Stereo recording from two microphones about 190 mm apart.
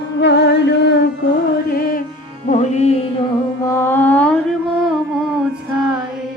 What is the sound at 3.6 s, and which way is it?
Mantra, 15° left (ahead or behind).